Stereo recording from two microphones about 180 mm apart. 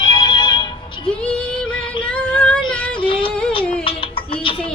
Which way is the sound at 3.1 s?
30° left (ahead or behind).